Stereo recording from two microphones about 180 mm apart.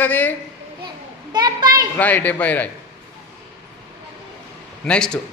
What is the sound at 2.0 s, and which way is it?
Speech, 10° left (ahead or behind).